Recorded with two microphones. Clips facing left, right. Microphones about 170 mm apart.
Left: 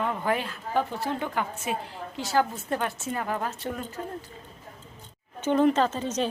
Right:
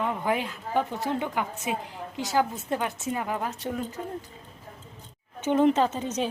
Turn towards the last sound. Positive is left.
turn(degrees=-10)  # may be behind; listen again after turning